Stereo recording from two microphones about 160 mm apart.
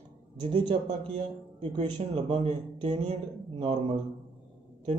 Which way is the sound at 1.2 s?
35° right (ahead or behind).